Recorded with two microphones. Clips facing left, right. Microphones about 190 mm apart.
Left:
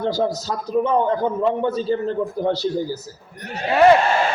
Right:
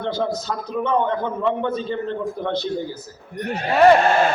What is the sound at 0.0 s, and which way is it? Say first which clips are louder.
A man's voice: left 2 dB; 40° left (ahead or behind).